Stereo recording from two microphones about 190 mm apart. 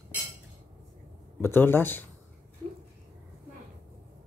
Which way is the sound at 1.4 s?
10° left (ahead or behind).